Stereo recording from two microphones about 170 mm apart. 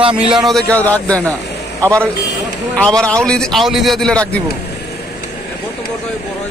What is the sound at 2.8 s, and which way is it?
A man's voice, 5° left (ahead or behind).